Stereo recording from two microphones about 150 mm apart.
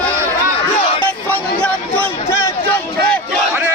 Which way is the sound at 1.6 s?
10° left (ahead or behind).